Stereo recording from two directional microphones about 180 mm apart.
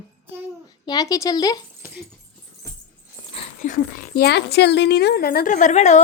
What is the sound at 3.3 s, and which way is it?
Speech, 40° left (ahead or behind).